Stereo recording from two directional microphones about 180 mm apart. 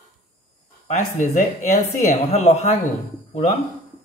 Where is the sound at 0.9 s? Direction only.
45° left (ahead or behind).